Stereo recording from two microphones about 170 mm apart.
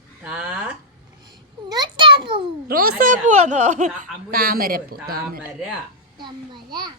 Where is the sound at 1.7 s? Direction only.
25° right (ahead or behind).